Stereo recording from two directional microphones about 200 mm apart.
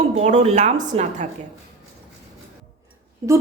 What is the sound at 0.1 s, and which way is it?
Speech, 35° right (ahead or behind).